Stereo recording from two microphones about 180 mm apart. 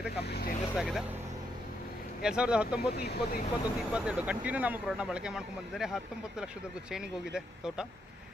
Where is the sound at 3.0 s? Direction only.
60° left (ahead or behind).